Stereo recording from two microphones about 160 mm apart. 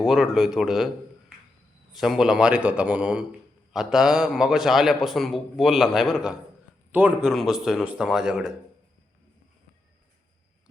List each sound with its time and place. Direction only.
0.0 s a man's voice: centre (ahead or behind)
1.9 s a man's voice: centre (ahead or behind)